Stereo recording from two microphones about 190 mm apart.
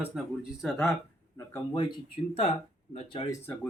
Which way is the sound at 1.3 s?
20° left (ahead or behind).